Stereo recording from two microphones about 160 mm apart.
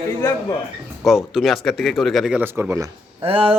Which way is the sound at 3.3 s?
35° right (ahead or behind).